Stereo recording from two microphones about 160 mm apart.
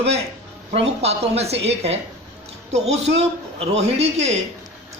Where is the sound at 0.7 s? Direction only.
40° right (ahead or behind).